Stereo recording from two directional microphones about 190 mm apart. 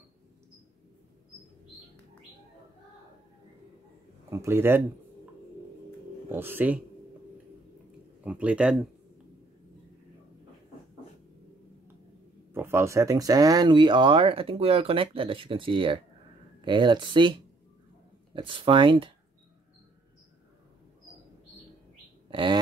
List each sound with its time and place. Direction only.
4.3 s speech: 15° right (ahead or behind)
6.2 s speech: 10° right (ahead or behind)
8.2 s speech: 5° right (ahead or behind)
12.5 s speech: 15° right (ahead or behind)
22.3 s speech: 25° right (ahead or behind)